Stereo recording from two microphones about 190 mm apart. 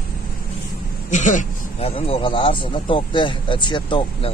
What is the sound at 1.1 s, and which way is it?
Speech, 35° left (ahead or behind).